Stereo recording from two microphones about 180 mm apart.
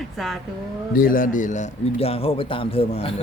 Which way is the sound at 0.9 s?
50° left (ahead or behind).